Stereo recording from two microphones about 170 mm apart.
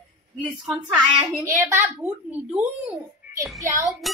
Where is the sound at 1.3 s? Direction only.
15° right (ahead or behind).